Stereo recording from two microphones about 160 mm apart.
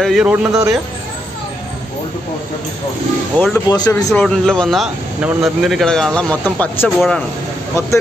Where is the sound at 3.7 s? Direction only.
20° left (ahead or behind).